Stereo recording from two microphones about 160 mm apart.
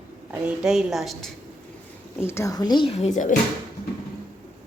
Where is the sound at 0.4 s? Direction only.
5° right (ahead or behind).